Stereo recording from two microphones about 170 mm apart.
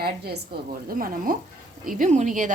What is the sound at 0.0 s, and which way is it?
A woman's voice, 60° right (ahead or behind).